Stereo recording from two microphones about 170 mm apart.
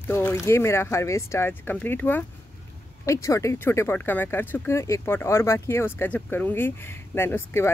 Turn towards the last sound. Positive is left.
turn(degrees=15)  # may be behind; listen again after turning